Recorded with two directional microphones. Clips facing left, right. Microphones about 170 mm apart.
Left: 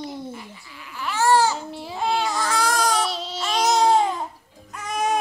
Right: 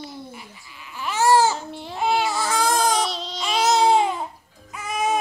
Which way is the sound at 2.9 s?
5° left (ahead or behind).